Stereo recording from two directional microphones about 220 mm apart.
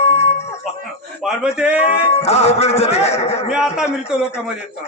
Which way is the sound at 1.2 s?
5° right (ahead or behind).